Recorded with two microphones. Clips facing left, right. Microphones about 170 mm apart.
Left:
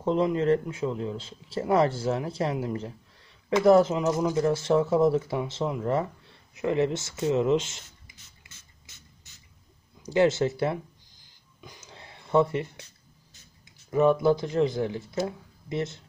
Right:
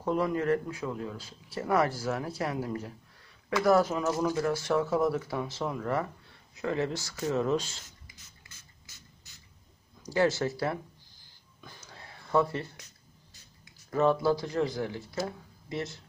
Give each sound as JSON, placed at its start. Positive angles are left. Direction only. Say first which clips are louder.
{"t": 0.0, "sound": "speech", "louder": "left 4 dB", "side_deg": 25}
{"t": 8.5, "sound": "ratchet", "louder": "left 1 dB", "side_deg": 25}
{"t": 10.0, "sound": "speech", "louder": "left 4 dB", "side_deg": 20}
{"t": 11.6, "sound": "a sound", "louder": "left 2 dB", "side_deg": 20}
{"t": 13.8, "sound": "speech", "louder": "left 4 dB", "side_deg": 15}